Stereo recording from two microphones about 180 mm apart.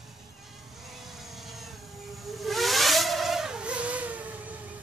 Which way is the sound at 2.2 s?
Centre (ahead or behind).